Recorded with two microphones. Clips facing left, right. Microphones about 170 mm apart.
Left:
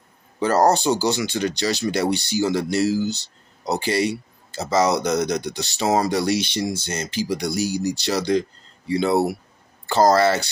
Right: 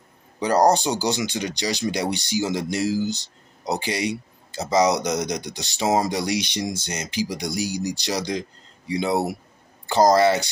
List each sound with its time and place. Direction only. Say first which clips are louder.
0.4 s speech: left 1 dB; 15° right (ahead or behind)